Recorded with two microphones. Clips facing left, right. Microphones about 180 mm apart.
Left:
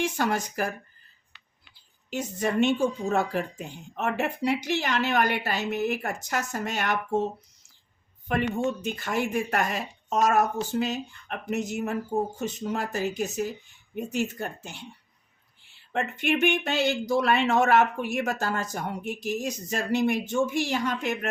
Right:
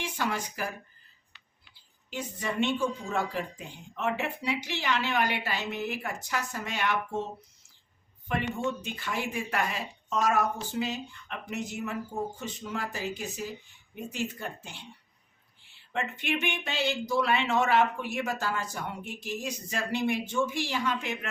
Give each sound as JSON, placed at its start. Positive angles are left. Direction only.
{"t": 0.0, "sound": "speech", "side_deg": 45}
{"t": 2.0, "sound": "speech", "side_deg": 45}
{"t": 8.3, "sound": "speech", "side_deg": 50}
{"t": 15.9, "sound": "speech", "side_deg": 45}